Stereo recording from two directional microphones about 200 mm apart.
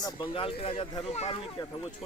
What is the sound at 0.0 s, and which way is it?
A man's voice, 25° left (ahead or behind).